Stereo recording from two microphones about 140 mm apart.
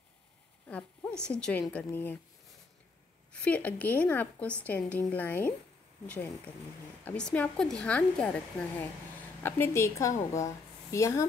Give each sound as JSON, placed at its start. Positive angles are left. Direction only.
{"t": 0.7, "sound": "a woman's voice", "side_deg": 10}
{"t": 3.3, "sound": "a woman's voice", "side_deg": 10}
{"t": 7.1, "sound": "a woman's voice", "side_deg": 10}